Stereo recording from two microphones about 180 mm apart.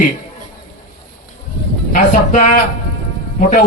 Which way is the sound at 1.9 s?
45° left (ahead or behind).